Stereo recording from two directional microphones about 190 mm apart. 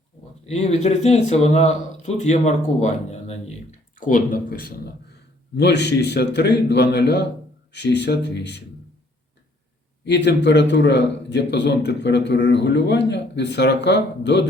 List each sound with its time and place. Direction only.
0.4 s speech: 35° left (ahead or behind); by 4.8 s 50° left (ahead or behind)
5.5 s a man's voice: 65° left (ahead or behind)
10.1 s a man's voice: 65° left (ahead or behind)